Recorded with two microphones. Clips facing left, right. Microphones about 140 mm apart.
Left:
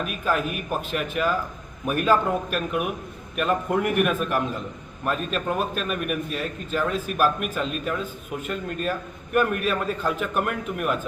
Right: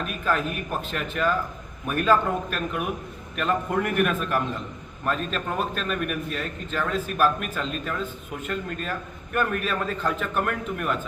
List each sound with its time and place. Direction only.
0.0 s a man's voice: 10° left (ahead or behind)